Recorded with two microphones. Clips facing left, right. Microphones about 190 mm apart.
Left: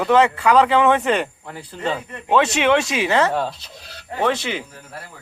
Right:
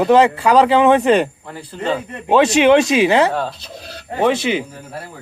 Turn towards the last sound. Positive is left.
turn(degrees=-15)  # may be behind; listen again after turning